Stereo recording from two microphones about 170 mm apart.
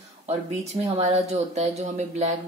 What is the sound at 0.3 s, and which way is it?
Speech, 40° right (ahead or behind).